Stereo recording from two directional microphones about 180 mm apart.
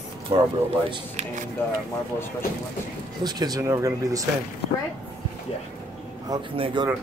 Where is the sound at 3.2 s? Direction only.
20° right (ahead or behind).